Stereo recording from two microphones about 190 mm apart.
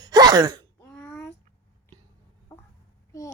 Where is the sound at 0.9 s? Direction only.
5° left (ahead or behind).